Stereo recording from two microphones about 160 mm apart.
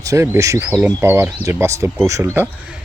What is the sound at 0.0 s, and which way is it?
Speech, 20° right (ahead or behind).